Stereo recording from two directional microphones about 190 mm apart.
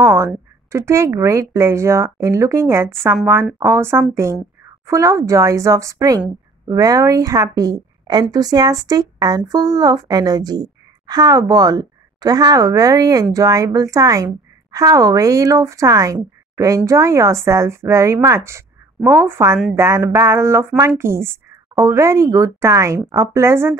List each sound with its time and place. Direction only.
0.0 s a woman's voice: 15° right (ahead or behind)